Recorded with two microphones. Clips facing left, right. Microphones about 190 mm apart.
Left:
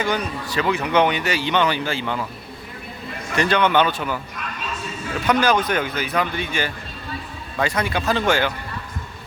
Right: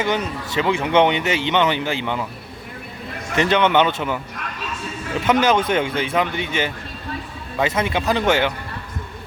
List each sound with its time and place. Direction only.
0.0 s speech: 20° right (ahead or behind)
3.3 s speech: 20° right (ahead or behind)
5.2 s speech: 20° right (ahead or behind)